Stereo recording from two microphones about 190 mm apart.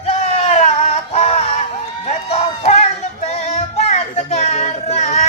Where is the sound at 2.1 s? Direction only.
35° left (ahead or behind).